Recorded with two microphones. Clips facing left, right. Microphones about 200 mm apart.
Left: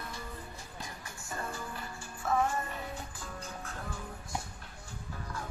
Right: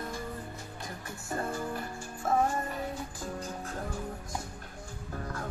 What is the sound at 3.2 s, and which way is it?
Music, 40° right (ahead or behind).